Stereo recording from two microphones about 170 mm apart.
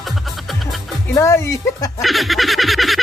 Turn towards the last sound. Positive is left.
turn(degrees=0)  # may be behind; listen again after turning